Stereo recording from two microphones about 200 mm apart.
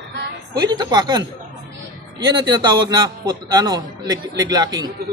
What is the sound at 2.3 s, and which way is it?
A man's voice, 20° right (ahead or behind).